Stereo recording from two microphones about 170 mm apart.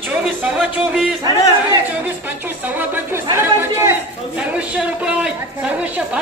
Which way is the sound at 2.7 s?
15° right (ahead or behind).